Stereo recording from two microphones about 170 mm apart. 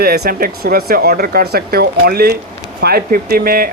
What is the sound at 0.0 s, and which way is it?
Speech, 65° right (ahead or behind).